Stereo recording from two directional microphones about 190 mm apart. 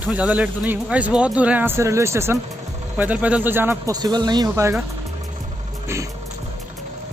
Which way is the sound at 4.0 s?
20° right (ahead or behind).